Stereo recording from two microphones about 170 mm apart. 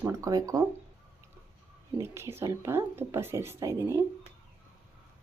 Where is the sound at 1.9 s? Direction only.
15° right (ahead or behind).